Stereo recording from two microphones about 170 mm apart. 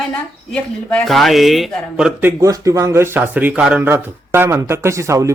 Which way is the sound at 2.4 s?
20° right (ahead or behind).